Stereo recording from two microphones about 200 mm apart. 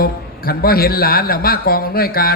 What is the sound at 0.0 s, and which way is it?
A man's voice, 50° left (ahead or behind).